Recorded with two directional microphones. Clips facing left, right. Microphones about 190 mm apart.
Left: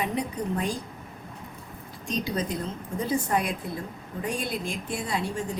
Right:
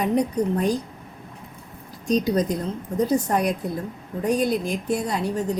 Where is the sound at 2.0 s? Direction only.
40° right (ahead or behind).